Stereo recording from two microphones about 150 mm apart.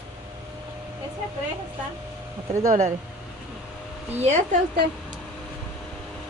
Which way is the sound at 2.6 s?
55° right (ahead or behind).